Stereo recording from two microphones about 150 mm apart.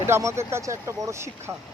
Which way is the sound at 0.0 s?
15° right (ahead or behind).